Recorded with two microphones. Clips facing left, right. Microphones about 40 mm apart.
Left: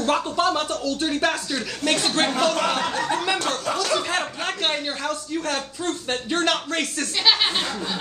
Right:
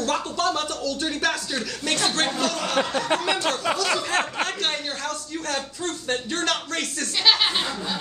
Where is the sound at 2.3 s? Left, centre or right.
Left.